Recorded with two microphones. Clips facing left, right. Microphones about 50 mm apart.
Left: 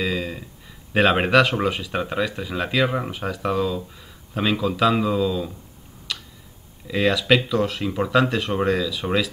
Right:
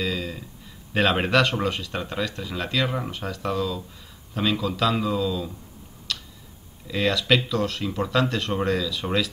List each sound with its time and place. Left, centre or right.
0.0 s a sound: centre
0.9 s speech: centre
6.1 s tick-tock: centre
6.9 s speech: centre